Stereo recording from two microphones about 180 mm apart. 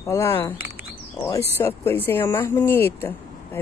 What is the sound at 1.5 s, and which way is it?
A woman's voice, 15° left (ahead or behind).